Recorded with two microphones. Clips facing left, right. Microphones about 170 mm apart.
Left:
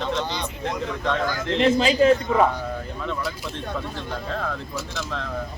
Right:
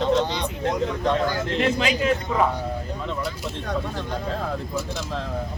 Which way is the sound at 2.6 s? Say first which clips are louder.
Right 1 dB; 30° right (ahead or behind).